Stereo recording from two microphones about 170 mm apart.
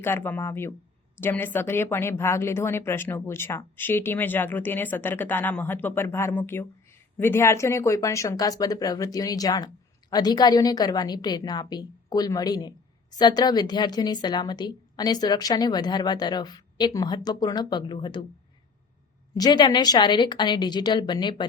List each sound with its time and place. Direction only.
0.0 s a woman's voice: 10° left (ahead or behind)
19.3 s a woman's voice: 25° left (ahead or behind)